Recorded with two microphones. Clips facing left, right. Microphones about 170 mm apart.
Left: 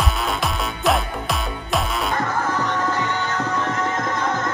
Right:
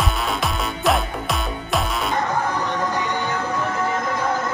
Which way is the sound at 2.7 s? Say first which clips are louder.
Even; 15° right (ahead or behind).